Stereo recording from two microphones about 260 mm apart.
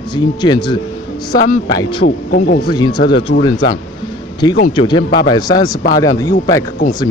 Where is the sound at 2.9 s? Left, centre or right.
Left.